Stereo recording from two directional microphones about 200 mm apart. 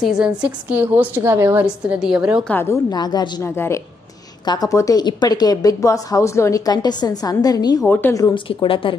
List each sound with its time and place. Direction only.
0.0 s a woman's voice: 5° right (ahead or behind)
2.5 s a woman's voice: 15° left (ahead or behind)